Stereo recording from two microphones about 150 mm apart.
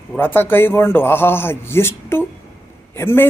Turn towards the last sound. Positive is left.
turn(degrees=15)  # may be behind; listen again after turning